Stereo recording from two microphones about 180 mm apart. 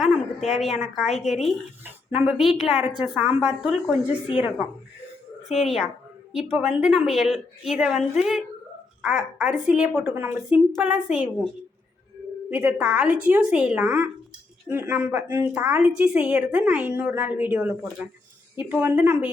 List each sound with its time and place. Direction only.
0.0 s a sound: centre (ahead or behind)
0.5 s a woman's voice: centre (ahead or behind)
12.5 s a woman's voice: 10° right (ahead or behind)